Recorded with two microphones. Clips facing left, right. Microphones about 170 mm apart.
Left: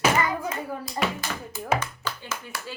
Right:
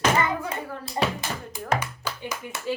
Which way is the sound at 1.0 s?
25° right (ahead or behind).